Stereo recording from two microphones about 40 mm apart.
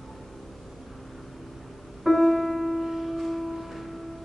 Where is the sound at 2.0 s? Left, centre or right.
Centre.